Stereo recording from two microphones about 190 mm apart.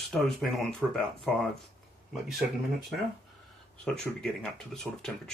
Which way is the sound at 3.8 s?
5° left (ahead or behind).